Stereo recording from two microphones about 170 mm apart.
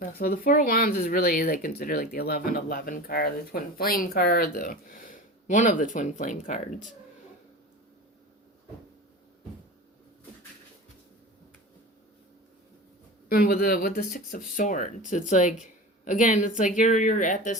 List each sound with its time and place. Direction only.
0.1 s speech: 60° left (ahead or behind)
13.2 s speech: 60° left (ahead or behind)
15.6 s a sound: 50° left (ahead or behind)
16.6 s speech: 50° left (ahead or behind)